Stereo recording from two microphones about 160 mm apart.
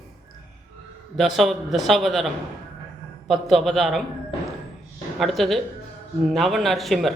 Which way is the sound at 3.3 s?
Centre (ahead or behind).